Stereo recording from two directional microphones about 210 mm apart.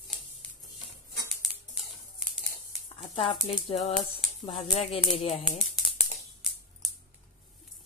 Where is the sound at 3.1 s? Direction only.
25° left (ahead or behind).